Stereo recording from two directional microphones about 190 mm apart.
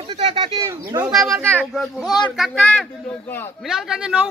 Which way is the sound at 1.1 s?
Centre (ahead or behind).